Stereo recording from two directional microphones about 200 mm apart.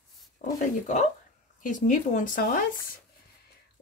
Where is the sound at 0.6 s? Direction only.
35° left (ahead or behind).